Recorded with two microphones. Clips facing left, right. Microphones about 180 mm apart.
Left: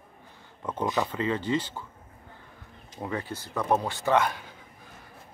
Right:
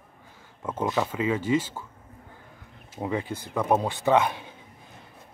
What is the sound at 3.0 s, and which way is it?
Speech, 15° right (ahead or behind).